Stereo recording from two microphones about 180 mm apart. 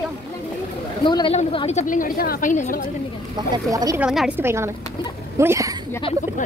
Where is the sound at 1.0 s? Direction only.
30° left (ahead or behind); by 2.8 s 45° left (ahead or behind).